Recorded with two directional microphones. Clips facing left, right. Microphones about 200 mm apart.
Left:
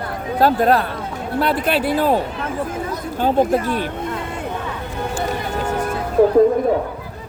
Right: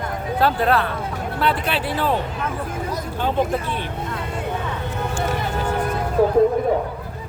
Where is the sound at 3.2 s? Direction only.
40° left (ahead or behind).